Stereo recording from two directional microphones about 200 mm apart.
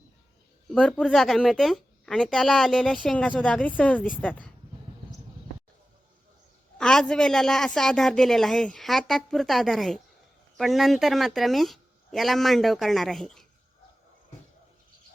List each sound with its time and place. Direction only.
0.7 s a woman's voice: 5° left (ahead or behind)
6.7 s a woman's voice: 5° left (ahead or behind)